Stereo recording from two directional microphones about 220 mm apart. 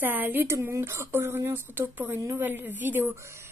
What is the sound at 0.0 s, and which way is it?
Speech, 10° right (ahead or behind).